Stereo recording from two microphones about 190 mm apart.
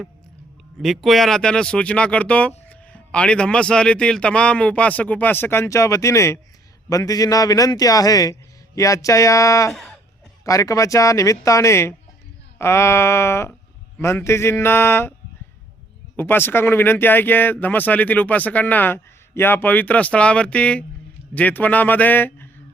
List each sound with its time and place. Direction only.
0.8 s speech: centre (ahead or behind)
16.1 s speech: 10° left (ahead or behind)